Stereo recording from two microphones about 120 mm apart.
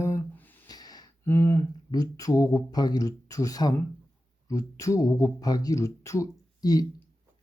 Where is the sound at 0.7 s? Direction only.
35° left (ahead or behind).